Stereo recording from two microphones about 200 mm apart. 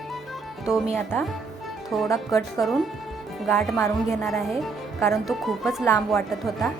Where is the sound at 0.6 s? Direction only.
5° right (ahead or behind).